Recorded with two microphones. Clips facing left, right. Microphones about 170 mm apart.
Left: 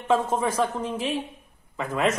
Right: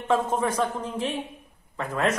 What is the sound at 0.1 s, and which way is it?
Speech, 10° left (ahead or behind).